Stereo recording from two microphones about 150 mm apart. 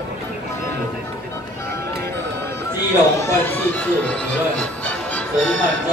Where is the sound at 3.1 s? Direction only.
15° left (ahead or behind).